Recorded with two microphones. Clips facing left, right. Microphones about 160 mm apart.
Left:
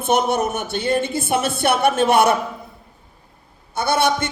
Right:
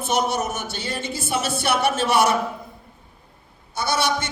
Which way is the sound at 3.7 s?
55° left (ahead or behind).